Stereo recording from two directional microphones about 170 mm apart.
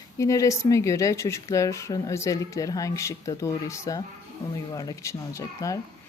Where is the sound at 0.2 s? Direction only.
20° left (ahead or behind).